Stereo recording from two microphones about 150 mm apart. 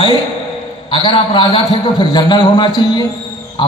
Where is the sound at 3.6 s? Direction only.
30° left (ahead or behind).